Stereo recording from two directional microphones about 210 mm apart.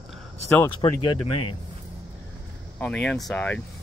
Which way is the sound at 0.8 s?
25° left (ahead or behind).